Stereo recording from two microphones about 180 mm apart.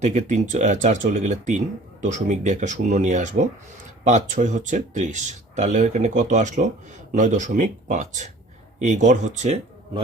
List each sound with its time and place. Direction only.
0.0 s speech: 40° right (ahead or behind)